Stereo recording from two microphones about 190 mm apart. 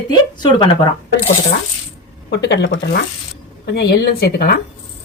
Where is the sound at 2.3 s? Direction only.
65° left (ahead or behind).